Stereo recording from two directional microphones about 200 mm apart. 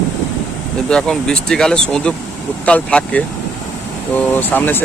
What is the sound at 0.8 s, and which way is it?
Speech, 5° left (ahead or behind).